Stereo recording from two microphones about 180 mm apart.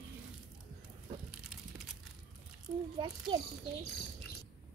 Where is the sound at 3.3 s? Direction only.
30° right (ahead or behind).